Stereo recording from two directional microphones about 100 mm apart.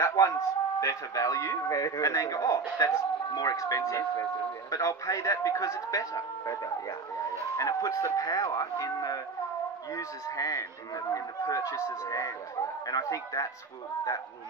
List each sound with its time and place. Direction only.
0.1 s speech: 30° left (ahead or behind)